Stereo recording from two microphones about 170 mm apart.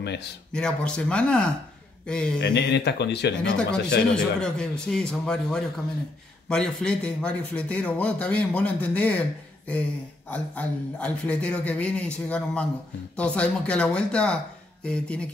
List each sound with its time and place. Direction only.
0.0 s speech: 85° left
0.5 s speech: 5° left (ahead or behind)
2.4 s speech: 85° left
4.1 s a man's voice: 5° left (ahead or behind)
10.3 s a man's voice: 10° left (ahead or behind)